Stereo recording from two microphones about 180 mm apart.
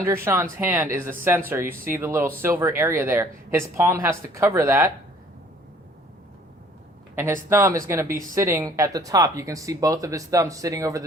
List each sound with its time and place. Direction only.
0.3 s speech: 15° right (ahead or behind)
7.2 s speech: 15° right (ahead or behind)